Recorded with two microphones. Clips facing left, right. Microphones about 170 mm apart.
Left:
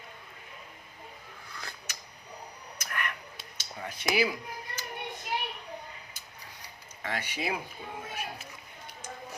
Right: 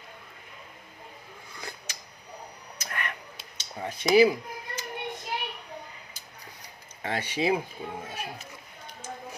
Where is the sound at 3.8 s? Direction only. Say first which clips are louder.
Right 9 dB; 30° right (ahead or behind).